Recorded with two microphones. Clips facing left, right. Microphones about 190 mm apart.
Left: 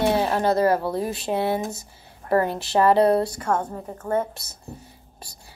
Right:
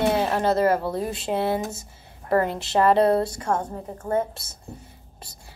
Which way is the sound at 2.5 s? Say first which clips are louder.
Left 1 dB; 20° right (ahead or behind).